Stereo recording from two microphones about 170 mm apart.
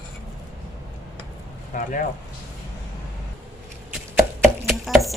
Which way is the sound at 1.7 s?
50° left (ahead or behind).